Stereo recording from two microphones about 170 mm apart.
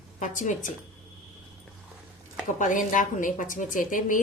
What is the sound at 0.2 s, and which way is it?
Speech, 45° left (ahead or behind).